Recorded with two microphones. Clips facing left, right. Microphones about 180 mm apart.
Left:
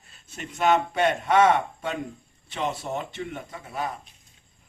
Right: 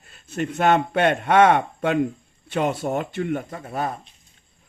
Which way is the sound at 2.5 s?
85° right.